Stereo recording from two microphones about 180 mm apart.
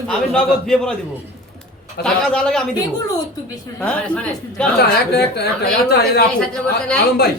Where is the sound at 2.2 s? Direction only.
5° left (ahead or behind).